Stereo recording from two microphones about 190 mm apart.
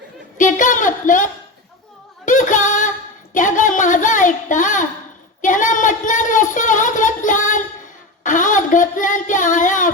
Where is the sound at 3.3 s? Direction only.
40° left (ahead or behind).